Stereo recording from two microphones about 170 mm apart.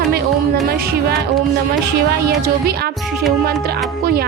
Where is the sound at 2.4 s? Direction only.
65° right (ahead or behind).